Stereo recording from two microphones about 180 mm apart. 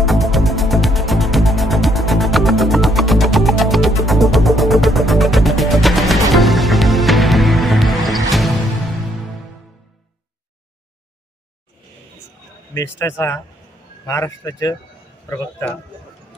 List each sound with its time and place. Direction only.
0.0 s music: centre (ahead or behind)
13.0 s speech: 15° left (ahead or behind)